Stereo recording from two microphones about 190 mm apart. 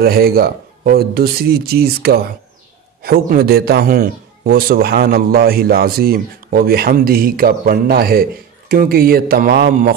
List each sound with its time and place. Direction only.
0.0 s a man's voice: 55° right (ahead or behind)